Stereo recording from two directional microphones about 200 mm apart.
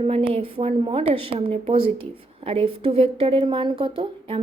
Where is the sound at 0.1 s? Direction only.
30° right (ahead or behind).